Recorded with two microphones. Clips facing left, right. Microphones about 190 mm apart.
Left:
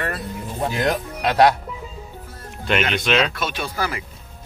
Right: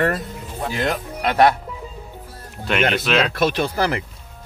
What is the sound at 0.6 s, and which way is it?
Speech, 15° left (ahead or behind).